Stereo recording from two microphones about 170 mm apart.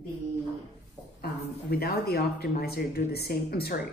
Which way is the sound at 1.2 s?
65° left (ahead or behind).